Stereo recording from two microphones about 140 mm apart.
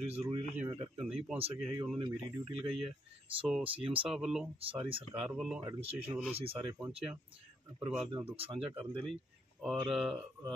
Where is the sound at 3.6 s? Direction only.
40° right (ahead or behind).